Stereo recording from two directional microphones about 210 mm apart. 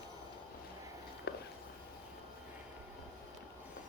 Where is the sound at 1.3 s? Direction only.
50° left (ahead or behind).